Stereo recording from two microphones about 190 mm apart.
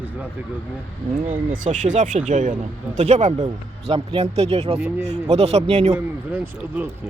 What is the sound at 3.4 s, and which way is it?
Speech, 25° right (ahead or behind).